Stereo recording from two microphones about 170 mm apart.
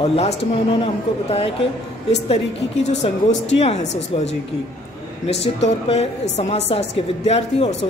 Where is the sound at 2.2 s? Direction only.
40° left (ahead or behind).